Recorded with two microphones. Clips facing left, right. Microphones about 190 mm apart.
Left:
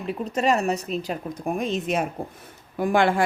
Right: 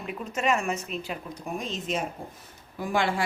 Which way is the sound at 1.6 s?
60° left (ahead or behind).